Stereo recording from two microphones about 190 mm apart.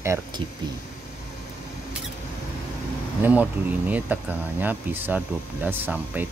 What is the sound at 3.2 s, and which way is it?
A man's voice, 10° right (ahead or behind).